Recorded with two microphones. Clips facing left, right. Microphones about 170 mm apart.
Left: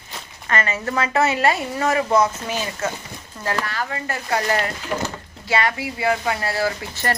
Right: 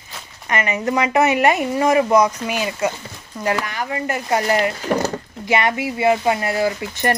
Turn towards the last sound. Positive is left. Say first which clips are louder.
# right 4 dB
turn(degrees=-15)  # may be behind; listen again after turning